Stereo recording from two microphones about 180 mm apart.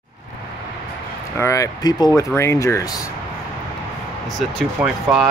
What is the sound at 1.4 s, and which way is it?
Speech, 15° left (ahead or behind).